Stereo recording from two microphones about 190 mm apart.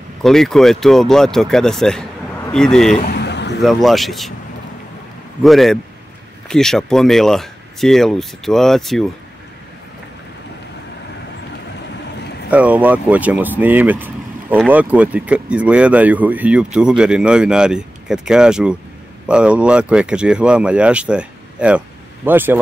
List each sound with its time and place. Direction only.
0.2 s speech: centre (ahead or behind)
3.1 s a sound: 65° left (ahead or behind)
3.6 s speech: centre (ahead or behind)
5.4 s speech: centre (ahead or behind)
12.4 s speech: 5° right (ahead or behind)